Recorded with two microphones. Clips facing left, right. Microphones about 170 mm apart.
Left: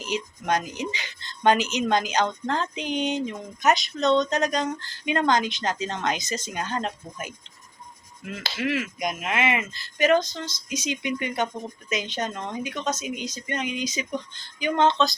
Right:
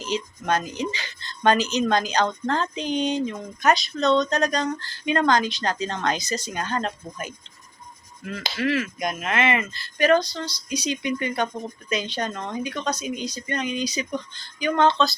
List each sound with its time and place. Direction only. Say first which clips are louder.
0.0 s speech: right 2 dB; 15° left (ahead or behind)
9.7 s speech: right 1 dB; 15° left (ahead or behind)